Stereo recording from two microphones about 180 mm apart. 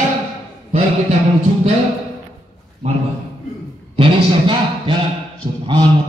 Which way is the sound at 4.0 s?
25° right (ahead or behind).